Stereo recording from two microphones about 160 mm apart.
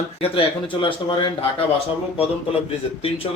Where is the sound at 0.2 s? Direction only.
35° left (ahead or behind).